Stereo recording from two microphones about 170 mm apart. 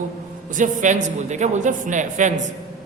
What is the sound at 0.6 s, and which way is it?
Speech, 50° right (ahead or behind).